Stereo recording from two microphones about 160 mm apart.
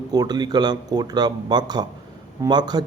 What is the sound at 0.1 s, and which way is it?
Speech, 25° right (ahead or behind).